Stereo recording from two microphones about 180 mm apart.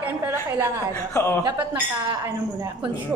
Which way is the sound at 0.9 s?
15° left (ahead or behind).